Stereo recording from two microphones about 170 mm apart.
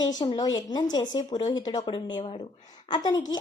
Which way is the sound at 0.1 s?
25° left (ahead or behind).